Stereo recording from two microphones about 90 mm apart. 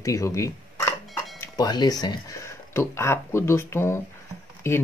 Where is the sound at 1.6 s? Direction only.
50° left (ahead or behind).